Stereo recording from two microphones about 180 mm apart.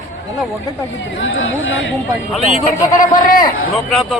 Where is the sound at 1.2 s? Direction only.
90° left.